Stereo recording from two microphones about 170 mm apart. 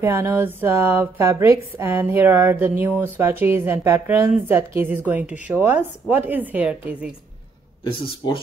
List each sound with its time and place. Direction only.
0.0 s a woman's voice: 15° right (ahead or behind)
7.8 s speech: 30° left (ahead or behind)